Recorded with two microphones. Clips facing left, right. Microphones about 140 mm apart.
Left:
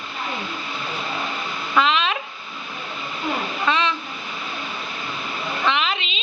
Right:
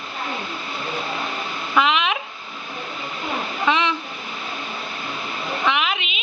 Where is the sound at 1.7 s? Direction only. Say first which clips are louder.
Even; 15° right (ahead or behind).